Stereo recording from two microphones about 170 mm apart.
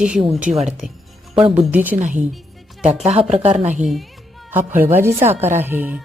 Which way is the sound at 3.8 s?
Centre (ahead or behind).